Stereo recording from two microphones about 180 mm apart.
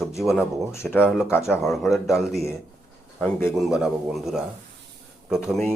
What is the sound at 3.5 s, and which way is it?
Speech, 5° right (ahead or behind).